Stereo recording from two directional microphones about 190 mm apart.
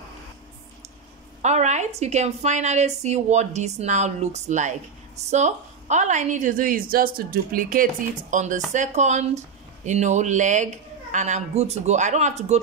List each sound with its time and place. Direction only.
1.4 s a woman's voice: 40° right (ahead or behind)